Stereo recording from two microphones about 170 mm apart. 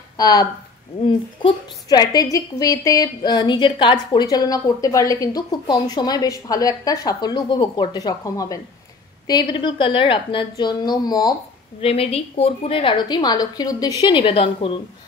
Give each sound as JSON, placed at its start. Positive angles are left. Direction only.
{"t": 0.2, "sound": "a woman's voice", "side_deg": 20}
{"t": 11.8, "sound": "a woman's voice", "side_deg": 35}